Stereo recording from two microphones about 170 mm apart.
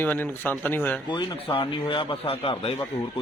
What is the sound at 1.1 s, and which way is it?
A man's voice, 30° left (ahead or behind).